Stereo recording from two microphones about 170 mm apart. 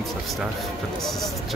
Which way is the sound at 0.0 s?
Centre (ahead or behind).